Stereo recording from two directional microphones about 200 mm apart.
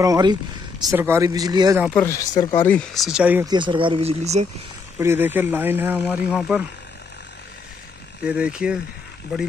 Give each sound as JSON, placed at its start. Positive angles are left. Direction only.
{"t": 0.0, "sound": "speech", "side_deg": -20}
{"t": 2.0, "sound": "speech", "side_deg": 15}
{"t": 3.4, "sound": "speech", "side_deg": -25}
{"t": 4.9, "sound": "speech", "side_deg": -10}
{"t": 8.2, "sound": "speech", "side_deg": -5}